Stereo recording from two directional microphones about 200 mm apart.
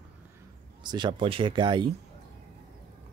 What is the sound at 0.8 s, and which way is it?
Speech, 20° right (ahead or behind).